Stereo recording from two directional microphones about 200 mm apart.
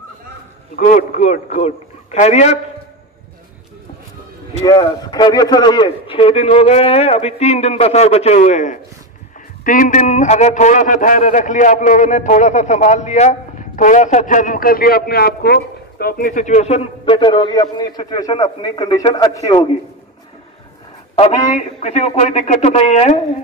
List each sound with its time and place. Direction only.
0.7 s a man's voice: 40° left (ahead or behind)
4.6 s a man's voice: 20° left (ahead or behind)
21.1 s a man's voice: 30° left (ahead or behind)